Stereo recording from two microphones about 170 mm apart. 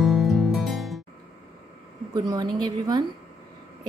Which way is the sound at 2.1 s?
25° right (ahead or behind).